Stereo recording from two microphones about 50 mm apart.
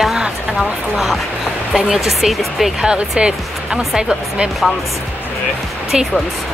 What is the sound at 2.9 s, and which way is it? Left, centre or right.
Speech, centre.